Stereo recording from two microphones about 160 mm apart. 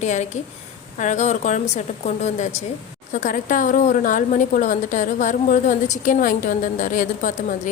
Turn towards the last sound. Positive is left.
turn(degrees=55)  # may be behind; listen again after turning